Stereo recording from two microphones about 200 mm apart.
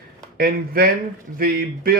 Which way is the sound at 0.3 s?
50° right (ahead or behind).